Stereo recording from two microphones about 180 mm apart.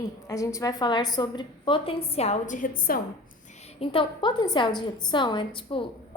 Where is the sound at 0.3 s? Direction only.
20° left (ahead or behind); by 3.0 s 55° left (ahead or behind).